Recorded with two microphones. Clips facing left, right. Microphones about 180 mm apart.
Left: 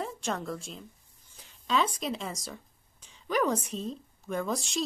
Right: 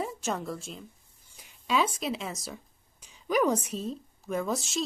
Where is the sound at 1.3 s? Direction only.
10° right (ahead or behind).